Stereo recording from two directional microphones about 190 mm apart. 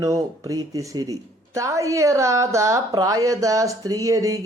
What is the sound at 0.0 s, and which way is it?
Speech, 15° right (ahead or behind).